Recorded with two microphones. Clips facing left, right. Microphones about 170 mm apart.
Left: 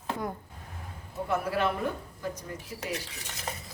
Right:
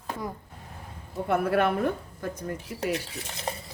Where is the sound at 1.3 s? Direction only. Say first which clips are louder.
Right 5 dB; 60° right (ahead or behind).